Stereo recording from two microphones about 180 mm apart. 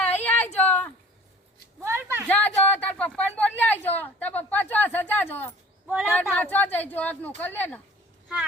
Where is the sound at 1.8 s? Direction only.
15° right (ahead or behind).